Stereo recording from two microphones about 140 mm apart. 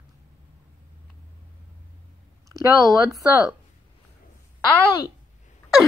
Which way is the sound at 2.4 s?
25° right (ahead or behind).